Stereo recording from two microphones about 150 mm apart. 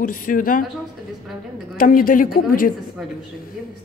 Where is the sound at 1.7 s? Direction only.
65° left (ahead or behind).